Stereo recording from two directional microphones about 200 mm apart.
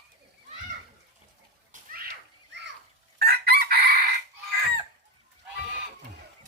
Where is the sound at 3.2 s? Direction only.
50° right (ahead or behind).